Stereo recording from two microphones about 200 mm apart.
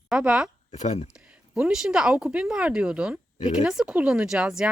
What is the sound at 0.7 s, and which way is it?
Speech, 35° left (ahead or behind).